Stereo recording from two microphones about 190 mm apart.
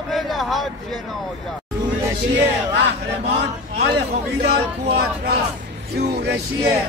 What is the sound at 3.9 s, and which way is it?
Speech, 60° right (ahead or behind).